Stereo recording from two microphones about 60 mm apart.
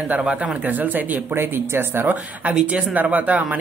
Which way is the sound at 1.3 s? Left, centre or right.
Right.